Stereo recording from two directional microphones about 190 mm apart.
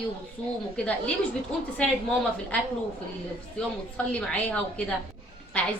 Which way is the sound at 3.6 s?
5° left (ahead or behind).